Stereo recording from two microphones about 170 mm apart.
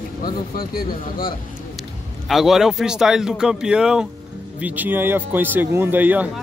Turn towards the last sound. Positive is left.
turn(degrees=-10)  # may be behind; listen again after turning